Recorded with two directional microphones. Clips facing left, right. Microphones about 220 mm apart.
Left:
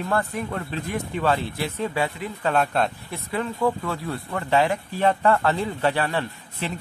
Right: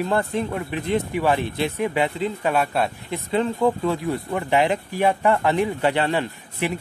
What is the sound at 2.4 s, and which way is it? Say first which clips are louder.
Speech: left 1 dB; 10° right (ahead or behind).